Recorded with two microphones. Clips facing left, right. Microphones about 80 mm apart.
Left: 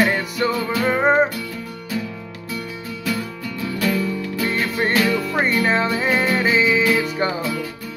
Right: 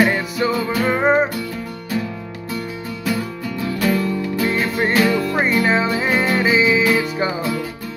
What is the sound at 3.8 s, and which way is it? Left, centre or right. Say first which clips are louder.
Music: right 2 dB; right.